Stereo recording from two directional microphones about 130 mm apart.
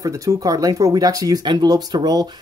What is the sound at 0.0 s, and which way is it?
Speech, 25° right (ahead or behind).